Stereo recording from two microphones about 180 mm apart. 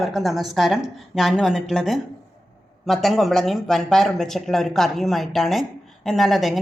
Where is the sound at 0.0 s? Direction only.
Centre (ahead or behind).